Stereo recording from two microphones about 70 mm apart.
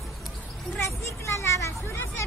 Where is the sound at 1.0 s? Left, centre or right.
Left.